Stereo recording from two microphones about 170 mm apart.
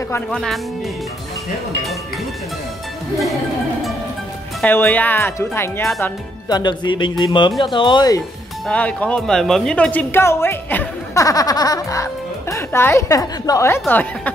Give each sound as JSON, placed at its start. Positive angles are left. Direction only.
{"t": 0.1, "sound": "speech", "side_deg": 5}
{"t": 4.6, "sound": "a woman's voice", "side_deg": 10}
{"t": 6.5, "sound": "speech", "side_deg": 25}
{"t": 8.6, "sound": "a woman's voice", "side_deg": 10}